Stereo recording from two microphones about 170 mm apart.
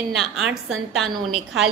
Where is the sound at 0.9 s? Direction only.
Centre (ahead or behind).